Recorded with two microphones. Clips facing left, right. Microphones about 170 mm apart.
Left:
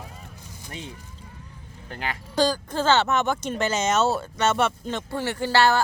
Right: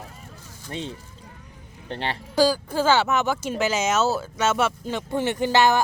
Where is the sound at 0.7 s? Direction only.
30° right (ahead or behind).